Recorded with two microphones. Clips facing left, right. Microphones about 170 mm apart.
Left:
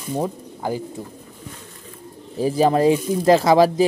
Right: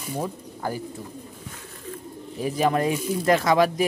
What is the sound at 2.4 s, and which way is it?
Speech, 30° left (ahead or behind).